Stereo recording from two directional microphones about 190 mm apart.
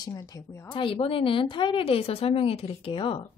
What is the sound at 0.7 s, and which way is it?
A woman's voice, 30° left (ahead or behind).